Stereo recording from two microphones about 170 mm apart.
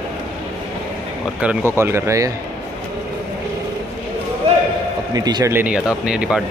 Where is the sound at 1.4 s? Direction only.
10° right (ahead or behind).